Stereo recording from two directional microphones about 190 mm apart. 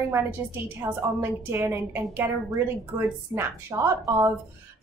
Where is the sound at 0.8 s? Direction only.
20° right (ahead or behind).